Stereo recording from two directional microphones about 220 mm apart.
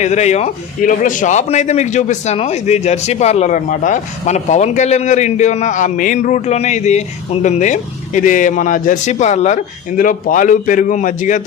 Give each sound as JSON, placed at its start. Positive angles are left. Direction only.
{"t": 0.0, "sound": "a man's voice", "side_deg": 30}